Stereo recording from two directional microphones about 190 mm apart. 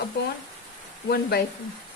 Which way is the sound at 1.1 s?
55° left (ahead or behind).